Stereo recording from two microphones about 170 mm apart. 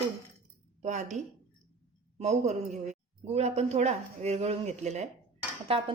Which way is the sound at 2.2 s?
40° right (ahead or behind).